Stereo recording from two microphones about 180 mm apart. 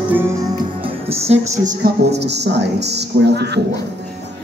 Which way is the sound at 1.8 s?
70° right (ahead or behind).